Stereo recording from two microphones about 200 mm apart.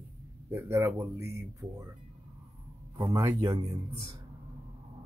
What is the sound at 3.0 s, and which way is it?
Speech, 20° right (ahead or behind).